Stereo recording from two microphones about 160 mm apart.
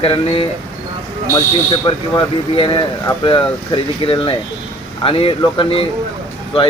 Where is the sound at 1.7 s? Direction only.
30° left (ahead or behind).